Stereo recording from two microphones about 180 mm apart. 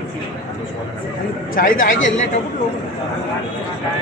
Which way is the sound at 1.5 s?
50° left (ahead or behind).